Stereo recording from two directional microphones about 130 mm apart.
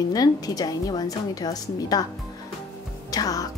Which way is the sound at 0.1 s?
30° left (ahead or behind).